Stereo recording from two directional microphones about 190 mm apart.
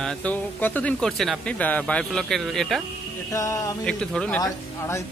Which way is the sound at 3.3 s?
15° left (ahead or behind).